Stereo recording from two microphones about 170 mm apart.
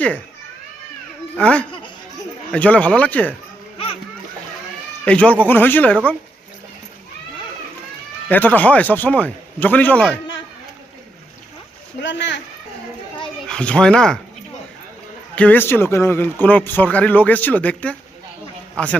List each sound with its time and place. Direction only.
1.4 s a man's voice: 5° left (ahead or behind)
5.0 s a man's voice: 10° left (ahead or behind)
8.3 s a man's voice: 10° left (ahead or behind)
11.9 s speech: 90° left
13.5 s speech: 5° left (ahead or behind)
15.4 s a man's voice: 10° left (ahead or behind)